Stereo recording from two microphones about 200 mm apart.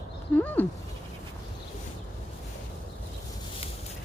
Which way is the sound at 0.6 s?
10° left (ahead or behind).